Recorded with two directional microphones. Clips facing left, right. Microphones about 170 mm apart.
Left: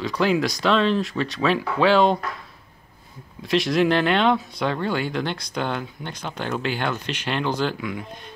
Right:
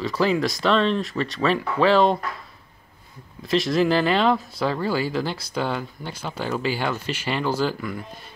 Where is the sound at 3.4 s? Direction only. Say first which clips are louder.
Even; centre (ahead or behind).